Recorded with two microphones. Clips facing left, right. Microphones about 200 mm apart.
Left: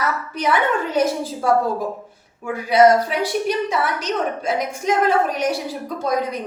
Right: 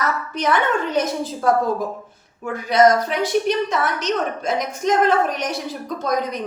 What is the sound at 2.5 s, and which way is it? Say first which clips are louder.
A woman's voice: left 1 dB; 10° left (ahead or behind).